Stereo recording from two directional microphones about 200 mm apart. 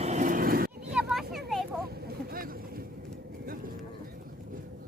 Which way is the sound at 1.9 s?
45° right (ahead or behind).